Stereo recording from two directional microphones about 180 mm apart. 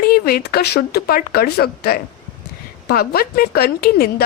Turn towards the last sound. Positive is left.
turn(degrees=60)  # may be behind; listen again after turning